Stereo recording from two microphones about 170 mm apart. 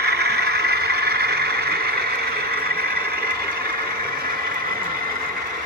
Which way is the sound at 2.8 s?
65° right (ahead or behind).